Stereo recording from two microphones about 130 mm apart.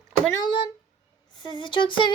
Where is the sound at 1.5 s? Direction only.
40° left (ahead or behind).